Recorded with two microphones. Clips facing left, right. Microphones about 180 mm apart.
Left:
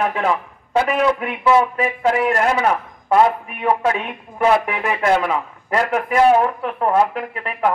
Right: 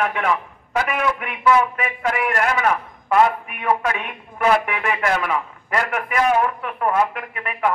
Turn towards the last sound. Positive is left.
turn(degrees=30)  # may be behind; listen again after turning